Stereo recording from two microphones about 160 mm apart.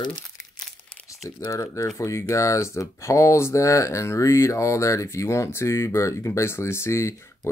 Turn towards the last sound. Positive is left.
turn(degrees=15)  # may be behind; listen again after turning